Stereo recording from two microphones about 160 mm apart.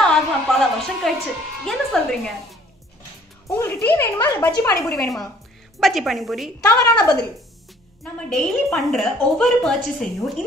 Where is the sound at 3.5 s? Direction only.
15° left (ahead or behind).